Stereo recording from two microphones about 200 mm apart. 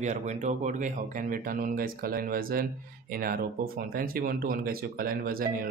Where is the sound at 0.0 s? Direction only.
35° right (ahead or behind).